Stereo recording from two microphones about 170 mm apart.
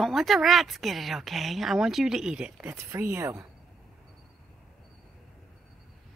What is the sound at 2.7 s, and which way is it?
Speech, 15° right (ahead or behind).